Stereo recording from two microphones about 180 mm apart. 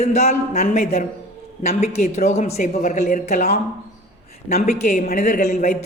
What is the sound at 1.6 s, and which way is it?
A woman's voice, 40° left (ahead or behind).